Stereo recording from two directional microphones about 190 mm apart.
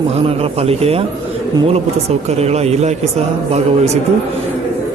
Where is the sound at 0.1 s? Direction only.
30° right (ahead or behind).